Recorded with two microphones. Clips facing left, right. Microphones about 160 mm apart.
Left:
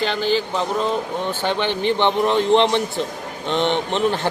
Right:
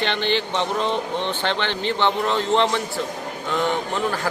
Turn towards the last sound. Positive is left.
turn(degrees=25)  # may be behind; listen again after turning